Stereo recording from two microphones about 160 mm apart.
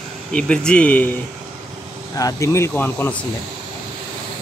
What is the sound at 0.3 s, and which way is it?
Speech, 5° left (ahead or behind).